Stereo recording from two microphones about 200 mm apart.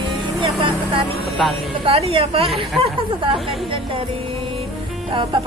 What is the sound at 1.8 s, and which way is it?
Speech, 30° right (ahead or behind).